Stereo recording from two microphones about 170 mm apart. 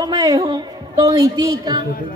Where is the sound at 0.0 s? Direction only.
25° right (ahead or behind).